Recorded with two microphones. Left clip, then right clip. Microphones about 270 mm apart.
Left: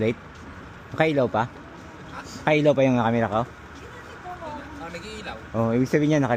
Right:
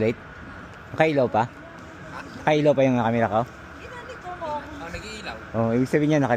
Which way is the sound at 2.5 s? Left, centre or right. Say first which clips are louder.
Even; centre.